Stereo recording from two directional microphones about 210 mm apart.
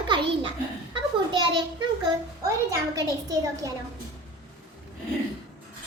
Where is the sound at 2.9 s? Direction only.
15° right (ahead or behind).